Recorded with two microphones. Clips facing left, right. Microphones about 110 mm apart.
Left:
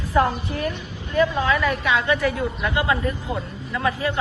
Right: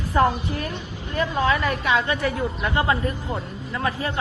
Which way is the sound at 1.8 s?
35° right (ahead or behind).